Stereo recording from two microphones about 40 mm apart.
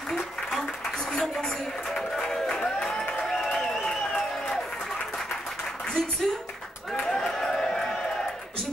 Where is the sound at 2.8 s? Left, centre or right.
Centre.